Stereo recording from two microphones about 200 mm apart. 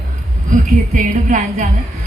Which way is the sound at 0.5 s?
40° right (ahead or behind).